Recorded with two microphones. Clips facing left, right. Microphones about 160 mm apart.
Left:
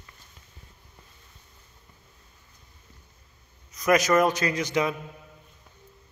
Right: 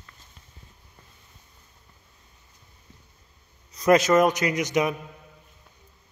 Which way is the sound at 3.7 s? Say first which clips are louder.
Right 3 dB; 25° right (ahead or behind).